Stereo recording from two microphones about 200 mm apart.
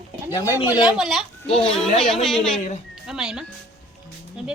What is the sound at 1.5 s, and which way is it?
Speech, 30° left (ahead or behind).